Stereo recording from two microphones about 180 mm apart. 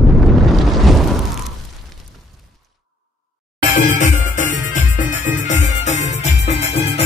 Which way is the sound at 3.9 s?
45° left (ahead or behind).